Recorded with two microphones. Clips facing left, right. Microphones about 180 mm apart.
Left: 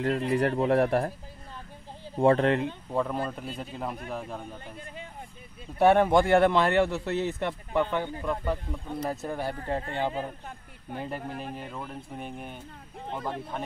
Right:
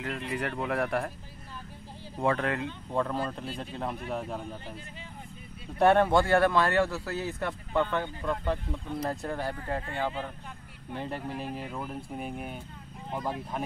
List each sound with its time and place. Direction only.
0.0 s speech: 35° left (ahead or behind)
2.1 s a man's voice: 30° left (ahead or behind)
2.9 s speech: 10° left (ahead or behind)
5.8 s a man's voice: 10° left (ahead or behind)
9.7 s a man's voice: 25° left (ahead or behind)
11.0 s speech: centre (ahead or behind)